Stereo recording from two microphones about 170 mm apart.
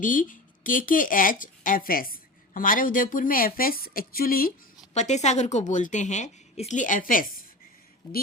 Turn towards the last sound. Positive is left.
turn(degrees=55)  # may be behind; listen again after turning